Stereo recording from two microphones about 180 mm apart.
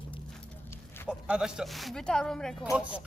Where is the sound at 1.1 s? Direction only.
5° right (ahead or behind).